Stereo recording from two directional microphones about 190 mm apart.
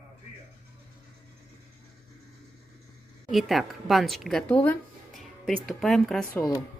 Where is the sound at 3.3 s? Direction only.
Centre (ahead or behind).